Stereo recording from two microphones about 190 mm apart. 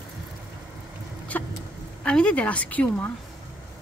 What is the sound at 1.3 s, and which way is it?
A woman's voice, 10° left (ahead or behind).